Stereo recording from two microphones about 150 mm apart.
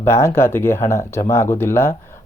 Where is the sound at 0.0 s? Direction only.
20° left (ahead or behind).